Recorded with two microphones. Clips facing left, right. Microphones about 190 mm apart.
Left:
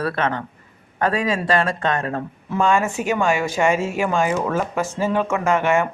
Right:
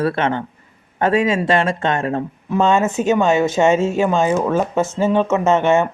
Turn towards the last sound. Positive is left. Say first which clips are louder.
# right 4 dB
turn(degrees=-25)  # may be behind; listen again after turning